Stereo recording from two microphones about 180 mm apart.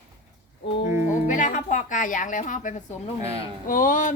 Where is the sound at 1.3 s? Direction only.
45° left (ahead or behind).